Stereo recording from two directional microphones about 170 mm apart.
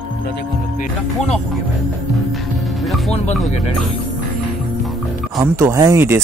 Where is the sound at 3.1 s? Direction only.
35° left (ahead or behind).